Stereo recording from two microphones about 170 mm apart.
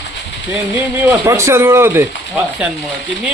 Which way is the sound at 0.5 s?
10° right (ahead or behind).